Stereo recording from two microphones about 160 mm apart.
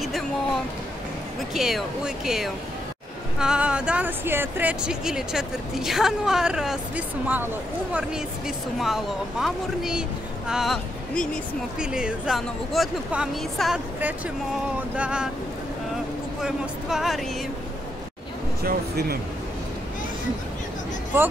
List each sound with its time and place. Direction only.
1.5 s speech: centre (ahead or behind)
16.3 s speech: 5° right (ahead or behind)
18.6 s speech: 75° right (ahead or behind)